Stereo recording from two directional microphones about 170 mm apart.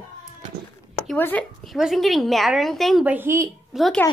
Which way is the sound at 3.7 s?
Centre (ahead or behind).